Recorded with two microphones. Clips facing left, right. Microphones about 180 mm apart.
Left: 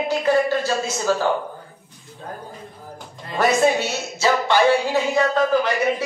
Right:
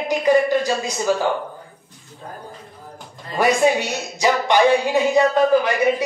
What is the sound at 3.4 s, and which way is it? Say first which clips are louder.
A man's voice: right 1 dB; 15° right (ahead or behind).